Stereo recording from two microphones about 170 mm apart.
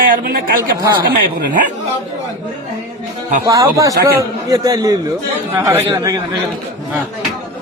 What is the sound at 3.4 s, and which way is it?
A man's voice, 20° right (ahead or behind).